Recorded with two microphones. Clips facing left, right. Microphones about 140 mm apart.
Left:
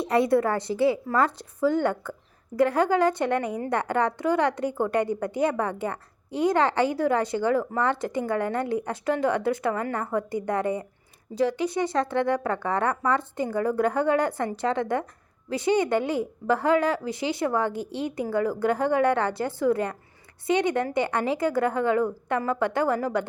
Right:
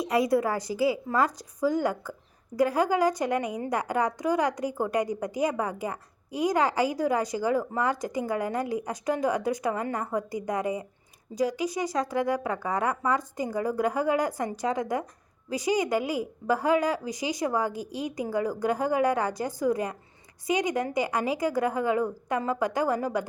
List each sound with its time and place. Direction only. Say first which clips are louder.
0.0 s a woman's voice: left 3 dB; 30° left (ahead or behind)
1.4 s a woman's voice: left 3 dB; 10° right (ahead or behind)
17.7 s a woman's voice: left 3 dB; 30° left (ahead or behind)
18.1 s a woman's voice: left 3 dB; 15° right (ahead or behind)